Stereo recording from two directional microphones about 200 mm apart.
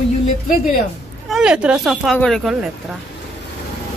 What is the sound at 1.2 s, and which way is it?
Speech, 5° right (ahead or behind).